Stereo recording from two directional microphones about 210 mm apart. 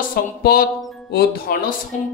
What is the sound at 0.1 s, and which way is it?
Speech, 45° left (ahead or behind).